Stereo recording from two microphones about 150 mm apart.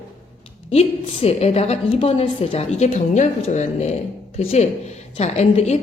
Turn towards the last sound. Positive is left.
turn(degrees=45)  # may be behind; listen again after turning